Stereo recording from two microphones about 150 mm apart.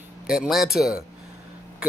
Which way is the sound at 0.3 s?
5° right (ahead or behind).